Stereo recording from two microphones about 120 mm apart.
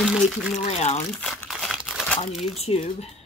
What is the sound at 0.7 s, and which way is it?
Speech, 65° left (ahead or behind).